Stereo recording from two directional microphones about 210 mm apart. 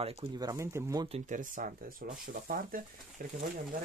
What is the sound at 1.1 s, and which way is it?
Speech, 35° right (ahead or behind).